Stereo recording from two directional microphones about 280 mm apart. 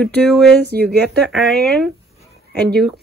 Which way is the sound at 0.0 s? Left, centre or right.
Centre.